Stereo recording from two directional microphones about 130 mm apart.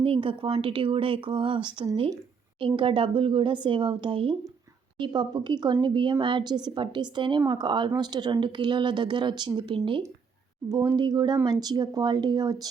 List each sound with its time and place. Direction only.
0.0 s a woman's voice: 40° right (ahead or behind)